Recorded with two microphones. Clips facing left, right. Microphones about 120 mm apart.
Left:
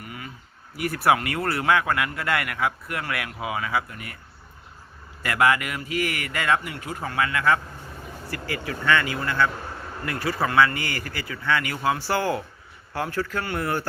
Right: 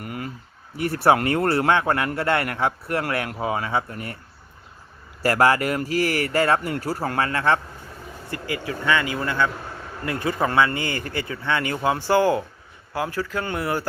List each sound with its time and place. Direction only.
0.0 s a sound: 50° right (ahead or behind)
0.8 s speech: 30° right (ahead or behind)
5.2 s speech: 35° right (ahead or behind); by 13.8 s 15° right (ahead or behind)